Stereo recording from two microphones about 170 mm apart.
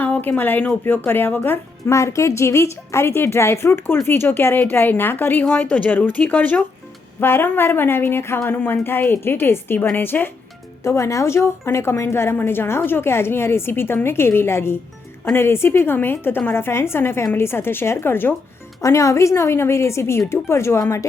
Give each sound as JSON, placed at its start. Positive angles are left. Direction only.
{"t": 0.0, "sound": "speech", "side_deg": 10}